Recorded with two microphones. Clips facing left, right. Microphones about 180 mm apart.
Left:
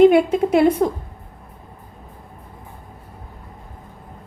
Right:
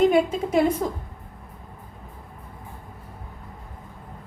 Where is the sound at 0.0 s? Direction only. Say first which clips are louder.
Left 7 dB; 65° left (ahead or behind).